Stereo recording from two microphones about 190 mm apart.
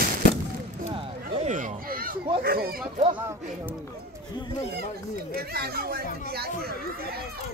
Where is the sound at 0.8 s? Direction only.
30° right (ahead or behind); by 2.1 s 50° right (ahead or behind).